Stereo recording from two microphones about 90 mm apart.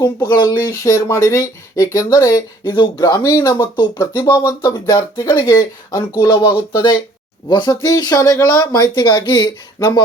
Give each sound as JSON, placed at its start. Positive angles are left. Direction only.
{"t": 0.0, "sound": "speech", "side_deg": 50}
{"t": 7.9, "sound": "speech", "side_deg": 45}